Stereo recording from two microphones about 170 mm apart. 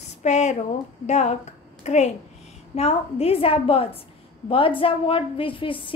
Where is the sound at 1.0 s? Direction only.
40° left (ahead or behind).